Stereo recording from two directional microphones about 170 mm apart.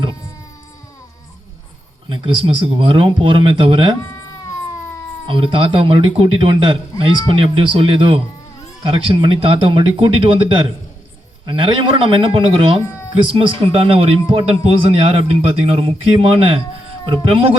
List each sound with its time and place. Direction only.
2.0 s speech: 30° right (ahead or behind)
5.2 s speech: 30° right (ahead or behind)